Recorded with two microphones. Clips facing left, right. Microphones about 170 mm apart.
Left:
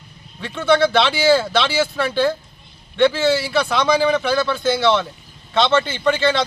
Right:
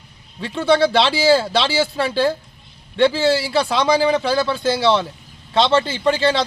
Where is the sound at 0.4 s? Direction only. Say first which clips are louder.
Even; 35° right (ahead or behind).